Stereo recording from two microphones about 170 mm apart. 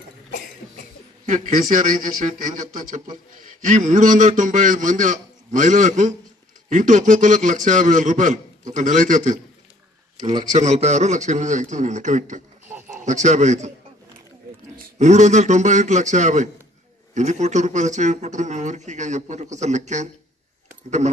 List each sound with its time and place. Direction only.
1.2 s a man's voice: 50° right (ahead or behind)
3.6 s a man's voice: 45° right (ahead or behind)
10.5 s a man's voice: 40° right (ahead or behind)
15.0 s a man's voice: 45° right (ahead or behind)